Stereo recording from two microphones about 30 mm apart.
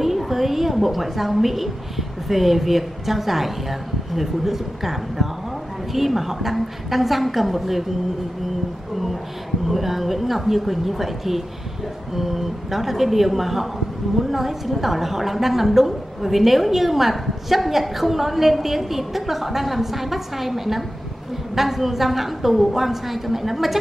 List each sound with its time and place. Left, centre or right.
0.0 s a woman's voice: centre
9.7 s a woman's voice: centre